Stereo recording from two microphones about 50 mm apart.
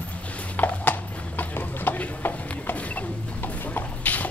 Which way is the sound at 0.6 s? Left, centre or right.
Left.